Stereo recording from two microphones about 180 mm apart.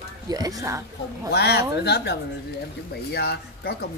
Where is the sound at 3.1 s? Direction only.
60° left (ahead or behind).